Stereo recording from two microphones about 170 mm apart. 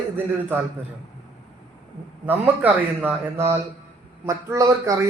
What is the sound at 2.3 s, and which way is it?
Speech, 10° right (ahead or behind).